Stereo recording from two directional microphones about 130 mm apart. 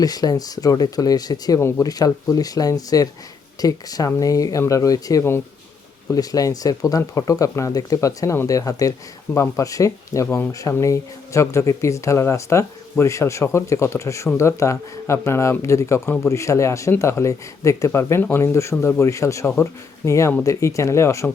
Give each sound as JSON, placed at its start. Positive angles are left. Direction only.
{"t": 0.0, "sound": "speech", "side_deg": 30}